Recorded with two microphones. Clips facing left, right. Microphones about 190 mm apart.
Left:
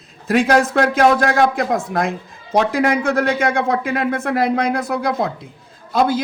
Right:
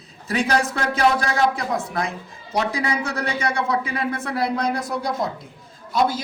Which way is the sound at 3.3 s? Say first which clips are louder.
Left 5 dB; 50° left (ahead or behind).